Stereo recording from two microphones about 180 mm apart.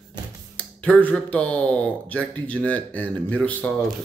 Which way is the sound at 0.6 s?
10° left (ahead or behind).